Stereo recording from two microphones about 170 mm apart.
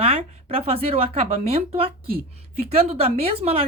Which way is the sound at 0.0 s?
35° right (ahead or behind).